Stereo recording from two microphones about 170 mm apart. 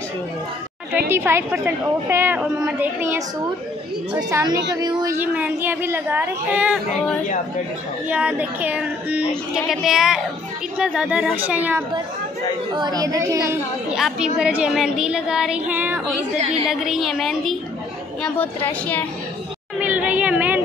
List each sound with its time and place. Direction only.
0.9 s a woman's voice: 15° right (ahead or behind)
5.2 s a woman's voice: 10° right (ahead or behind)
8.1 s a woman's voice: 10° right (ahead or behind)
9.3 s child singing: centre (ahead or behind)
10.8 s a woman's voice: 5° right (ahead or behind)
12.7 s a woman's voice: 25° right (ahead or behind)
14.2 s child singing: 5° right (ahead or behind)
18.7 s a woman's voice: 10° left (ahead or behind)
19.8 s a sound: 10° right (ahead or behind)